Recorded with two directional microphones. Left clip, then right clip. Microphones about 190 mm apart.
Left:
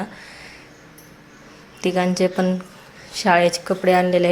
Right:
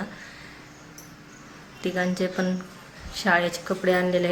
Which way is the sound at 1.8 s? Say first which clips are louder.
Left 7 dB; 30° left (ahead or behind).